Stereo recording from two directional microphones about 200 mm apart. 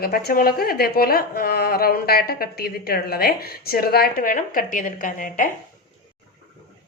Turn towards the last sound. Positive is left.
turn(degrees=40)  # may be behind; listen again after turning